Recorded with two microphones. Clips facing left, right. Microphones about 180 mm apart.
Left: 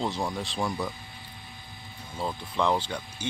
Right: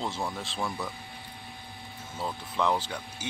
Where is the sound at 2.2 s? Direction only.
5° right (ahead or behind).